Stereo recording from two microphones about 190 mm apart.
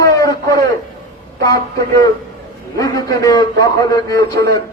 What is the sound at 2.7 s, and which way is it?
A man's voice, 15° left (ahead or behind).